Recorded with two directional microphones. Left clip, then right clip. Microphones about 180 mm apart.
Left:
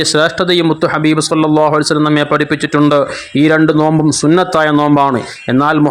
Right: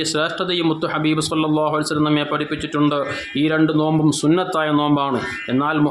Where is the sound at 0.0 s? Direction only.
40° left (ahead or behind).